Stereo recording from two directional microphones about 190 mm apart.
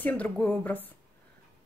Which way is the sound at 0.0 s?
10° left (ahead or behind).